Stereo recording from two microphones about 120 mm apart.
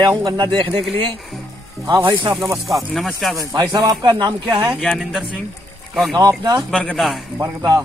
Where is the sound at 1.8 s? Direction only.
40° right (ahead or behind).